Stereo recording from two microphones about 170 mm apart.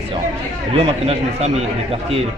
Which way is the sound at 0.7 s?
35° right (ahead or behind).